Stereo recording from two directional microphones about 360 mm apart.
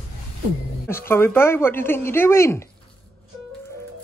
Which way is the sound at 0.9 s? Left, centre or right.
Centre.